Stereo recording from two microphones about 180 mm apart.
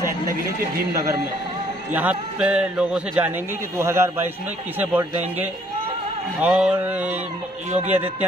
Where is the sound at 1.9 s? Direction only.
5° right (ahead or behind).